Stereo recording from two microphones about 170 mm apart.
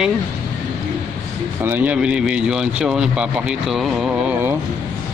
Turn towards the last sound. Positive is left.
turn(degrees=-10)  # may be behind; listen again after turning